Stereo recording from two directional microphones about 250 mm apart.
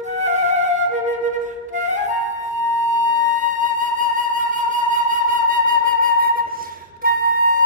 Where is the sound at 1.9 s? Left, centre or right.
Right.